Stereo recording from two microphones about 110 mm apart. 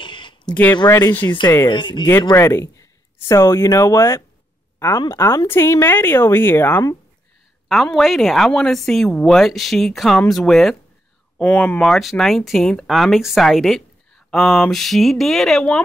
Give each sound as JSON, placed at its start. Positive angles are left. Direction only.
{"t": 0.0, "sound": "a sound", "side_deg": 45}
{"t": 0.8, "sound": "a woman's voice", "side_deg": 25}
{"t": 1.2, "sound": "speech", "side_deg": 45}
{"t": 2.3, "sound": "a woman's voice", "side_deg": 25}
{"t": 7.6, "sound": "speech", "side_deg": 0}